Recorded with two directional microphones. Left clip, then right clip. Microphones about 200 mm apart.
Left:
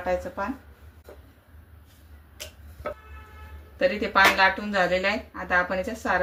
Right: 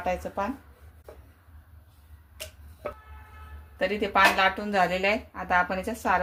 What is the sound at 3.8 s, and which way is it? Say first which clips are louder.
Speech: left 2 dB; 50° right (ahead or behind).